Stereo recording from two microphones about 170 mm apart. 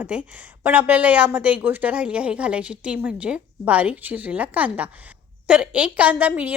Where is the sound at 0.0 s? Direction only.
10° right (ahead or behind).